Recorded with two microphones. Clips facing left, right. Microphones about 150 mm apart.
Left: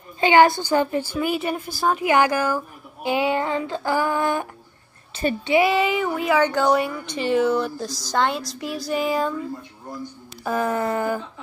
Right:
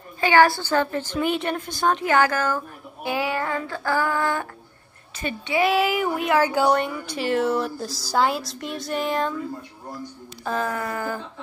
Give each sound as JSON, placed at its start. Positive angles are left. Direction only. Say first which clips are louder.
{"t": 0.2, "sound": "a woman's voice", "louder": "left 2 dB", "side_deg": 20}
{"t": 5.1, "sound": "a woman's voice", "louder": "left 7 dB", "side_deg": 30}
{"t": 5.7, "sound": "speech", "louder": "even", "side_deg": -5}
{"t": 10.4, "sound": "speech", "louder": "left 3 dB", "side_deg": 10}
{"t": 10.7, "sound": "a sound", "louder": "left 5 dB", "side_deg": 25}